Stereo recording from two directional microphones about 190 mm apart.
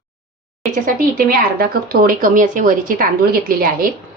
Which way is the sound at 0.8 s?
50° right (ahead or behind).